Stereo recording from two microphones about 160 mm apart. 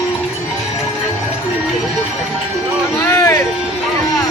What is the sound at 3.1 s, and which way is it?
Music, 20° left (ahead or behind).